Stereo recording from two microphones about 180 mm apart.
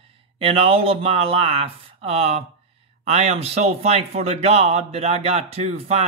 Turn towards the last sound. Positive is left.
turn(degrees=-35)  # may be behind; listen again after turning